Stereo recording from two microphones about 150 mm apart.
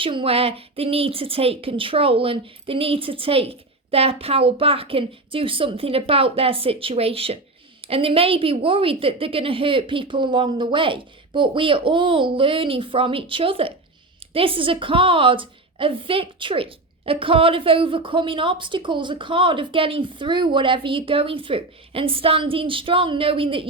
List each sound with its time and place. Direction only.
0.0 s a woman's voice: 35° right (ahead or behind)